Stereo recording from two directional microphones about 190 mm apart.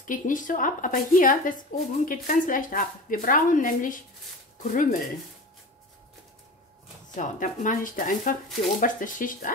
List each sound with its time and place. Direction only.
0.0 s speech: 45° left (ahead or behind)
7.2 s speech: 40° left (ahead or behind)